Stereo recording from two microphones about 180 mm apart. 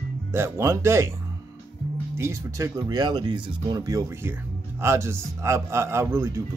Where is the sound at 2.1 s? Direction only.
15° right (ahead or behind).